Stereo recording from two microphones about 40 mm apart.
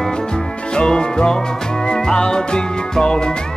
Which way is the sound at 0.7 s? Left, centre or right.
Centre.